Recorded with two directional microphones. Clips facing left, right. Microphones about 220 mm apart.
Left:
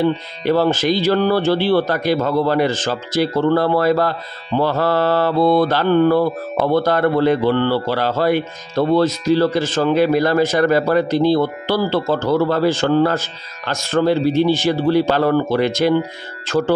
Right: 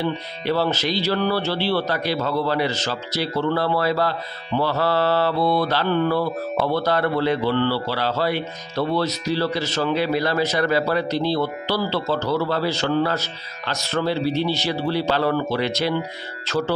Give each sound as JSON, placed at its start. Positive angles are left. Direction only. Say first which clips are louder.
{"t": 0.0, "sound": "a man's voice", "louder": "left 7 dB", "side_deg": 50}